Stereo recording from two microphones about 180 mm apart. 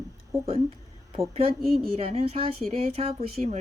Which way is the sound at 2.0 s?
35° right (ahead or behind).